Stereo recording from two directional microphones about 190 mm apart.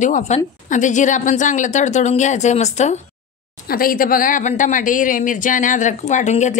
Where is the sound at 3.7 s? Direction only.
50° left (ahead or behind).